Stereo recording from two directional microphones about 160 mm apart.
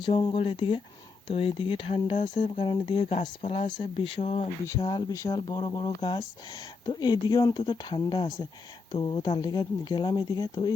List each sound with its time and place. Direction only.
0.0 s speech: 30° left (ahead or behind)
4.8 s speech: 25° left (ahead or behind)